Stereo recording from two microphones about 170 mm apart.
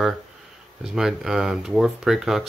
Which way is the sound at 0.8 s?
Centre (ahead or behind).